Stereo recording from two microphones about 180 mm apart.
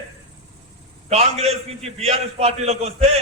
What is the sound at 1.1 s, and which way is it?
A man's voice, 35° right (ahead or behind).